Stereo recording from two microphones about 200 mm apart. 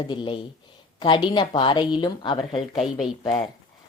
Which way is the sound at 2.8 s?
Centre (ahead or behind).